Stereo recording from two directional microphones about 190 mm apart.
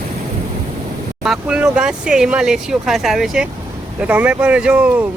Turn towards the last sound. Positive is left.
turn(degrees=-5)  # may be behind; listen again after turning